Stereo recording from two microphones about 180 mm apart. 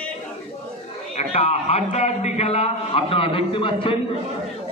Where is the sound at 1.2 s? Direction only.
35° left (ahead or behind).